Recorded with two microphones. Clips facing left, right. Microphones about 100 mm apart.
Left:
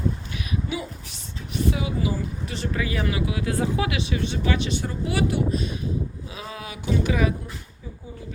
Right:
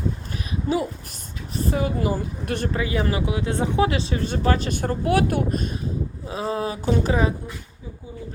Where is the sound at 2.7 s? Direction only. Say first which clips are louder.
Right 1 dB; 25° right (ahead or behind).